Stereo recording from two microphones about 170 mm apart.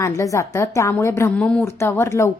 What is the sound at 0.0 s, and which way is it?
A woman's voice, 20° left (ahead or behind).